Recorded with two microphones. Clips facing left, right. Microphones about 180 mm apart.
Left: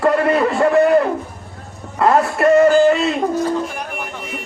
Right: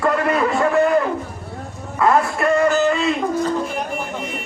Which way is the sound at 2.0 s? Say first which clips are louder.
Left 3 dB; 35° left (ahead or behind).